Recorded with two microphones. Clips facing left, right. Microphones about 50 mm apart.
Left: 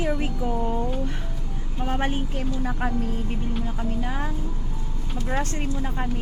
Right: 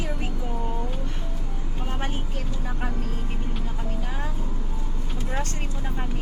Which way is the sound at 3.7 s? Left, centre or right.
Centre.